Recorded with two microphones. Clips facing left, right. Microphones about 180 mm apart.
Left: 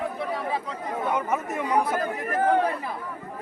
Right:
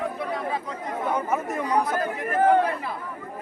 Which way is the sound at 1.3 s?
5° left (ahead or behind).